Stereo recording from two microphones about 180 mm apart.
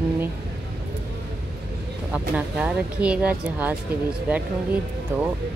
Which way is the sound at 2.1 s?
5° right (ahead or behind).